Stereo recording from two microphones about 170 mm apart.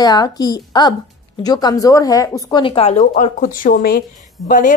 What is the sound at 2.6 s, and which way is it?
Speech, 35° left (ahead or behind).